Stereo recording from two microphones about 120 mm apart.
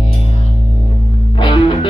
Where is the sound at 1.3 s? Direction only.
45° left (ahead or behind).